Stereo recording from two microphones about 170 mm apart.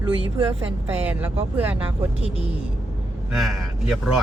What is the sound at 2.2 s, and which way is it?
Speech, 35° left (ahead or behind).